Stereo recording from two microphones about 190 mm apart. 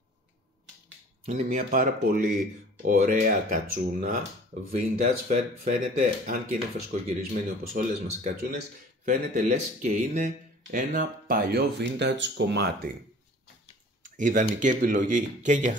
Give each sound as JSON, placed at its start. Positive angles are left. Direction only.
{"t": 1.2, "sound": "speech", "side_deg": -35}
{"t": 1.6, "sound": "speech", "side_deg": -50}
{"t": 14.0, "sound": "speech", "side_deg": -45}